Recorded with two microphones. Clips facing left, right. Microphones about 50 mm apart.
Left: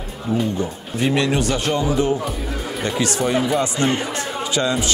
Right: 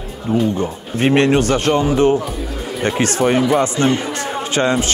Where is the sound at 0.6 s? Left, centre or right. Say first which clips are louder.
Right 3 dB; right.